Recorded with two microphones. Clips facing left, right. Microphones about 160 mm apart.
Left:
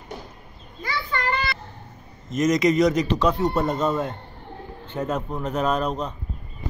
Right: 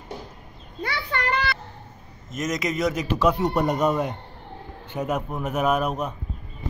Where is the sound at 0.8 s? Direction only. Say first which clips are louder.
Left 1 dB; 65° right (ahead or behind).